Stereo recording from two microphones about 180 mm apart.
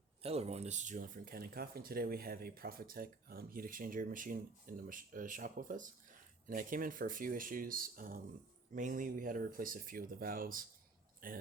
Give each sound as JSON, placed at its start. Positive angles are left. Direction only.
{"t": 0.2, "sound": "speech", "side_deg": -35}